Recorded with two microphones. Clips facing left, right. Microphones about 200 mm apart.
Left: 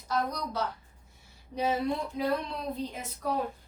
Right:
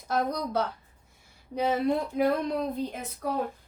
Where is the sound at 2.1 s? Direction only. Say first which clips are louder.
Right 5 dB; 55° right (ahead or behind).